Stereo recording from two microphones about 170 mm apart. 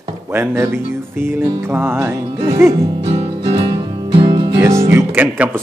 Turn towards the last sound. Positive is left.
turn(degrees=-10)  # may be behind; listen again after turning